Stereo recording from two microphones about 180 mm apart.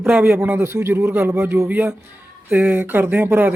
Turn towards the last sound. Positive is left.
turn(degrees=-10)  # may be behind; listen again after turning